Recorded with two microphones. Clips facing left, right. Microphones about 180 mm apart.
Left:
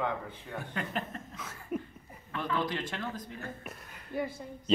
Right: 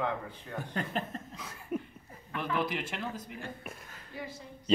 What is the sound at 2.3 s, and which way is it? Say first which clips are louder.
A man's voice: even; 10° right (ahead or behind).